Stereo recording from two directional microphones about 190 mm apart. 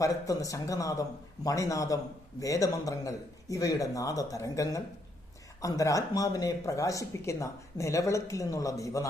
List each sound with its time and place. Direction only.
0.0 s speech: 20° left (ahead or behind)